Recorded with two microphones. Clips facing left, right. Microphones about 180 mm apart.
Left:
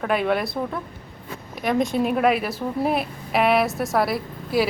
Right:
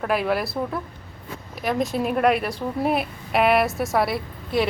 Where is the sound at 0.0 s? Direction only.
Centre (ahead or behind).